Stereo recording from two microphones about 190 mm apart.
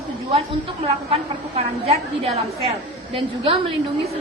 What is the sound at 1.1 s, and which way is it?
A woman's voice, 30° right (ahead or behind).